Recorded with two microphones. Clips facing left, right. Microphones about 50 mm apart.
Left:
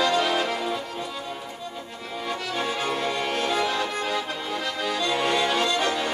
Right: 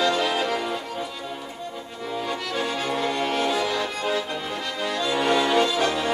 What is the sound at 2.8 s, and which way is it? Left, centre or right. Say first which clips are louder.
Music: right 1 dB; centre.